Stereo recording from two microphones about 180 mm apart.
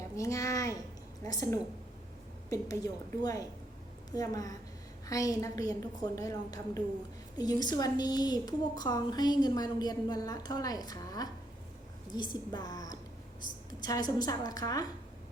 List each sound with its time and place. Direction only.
0.2 s a woman's voice: 20° left (ahead or behind)